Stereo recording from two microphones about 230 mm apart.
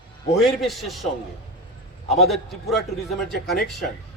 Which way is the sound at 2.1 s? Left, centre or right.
Centre.